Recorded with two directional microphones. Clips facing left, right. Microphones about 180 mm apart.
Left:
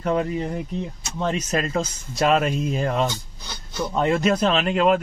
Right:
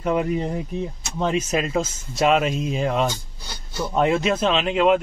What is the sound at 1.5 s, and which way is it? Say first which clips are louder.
Speech: right 1 dB; 5° right (ahead or behind).